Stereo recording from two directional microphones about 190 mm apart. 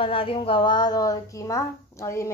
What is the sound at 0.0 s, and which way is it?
Speech, 30° left (ahead or behind).